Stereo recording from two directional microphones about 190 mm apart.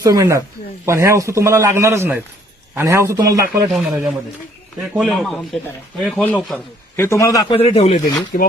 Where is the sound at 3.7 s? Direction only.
Centre (ahead or behind); by 7.5 s 20° left (ahead or behind).